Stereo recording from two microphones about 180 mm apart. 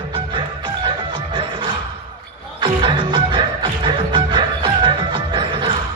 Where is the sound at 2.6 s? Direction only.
25° right (ahead or behind).